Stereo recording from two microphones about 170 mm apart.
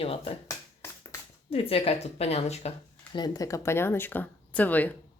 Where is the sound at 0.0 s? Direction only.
35° left (ahead or behind).